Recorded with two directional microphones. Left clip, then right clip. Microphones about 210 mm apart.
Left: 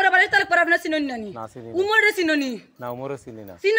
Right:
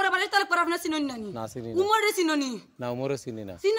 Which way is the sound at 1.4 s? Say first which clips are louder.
Even; 50° right (ahead or behind).